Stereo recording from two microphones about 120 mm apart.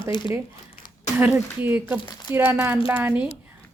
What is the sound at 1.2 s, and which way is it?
A woman's voice, 15° right (ahead or behind).